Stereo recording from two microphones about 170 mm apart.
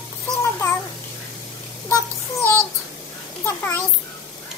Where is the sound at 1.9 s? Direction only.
15° left (ahead or behind).